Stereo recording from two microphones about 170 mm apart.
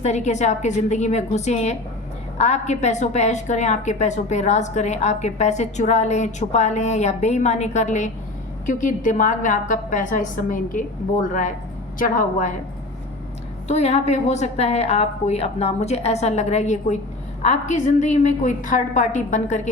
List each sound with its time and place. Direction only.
0.0 s a woman's voice: 45° left (ahead or behind)
13.7 s a woman's voice: 40° left (ahead or behind)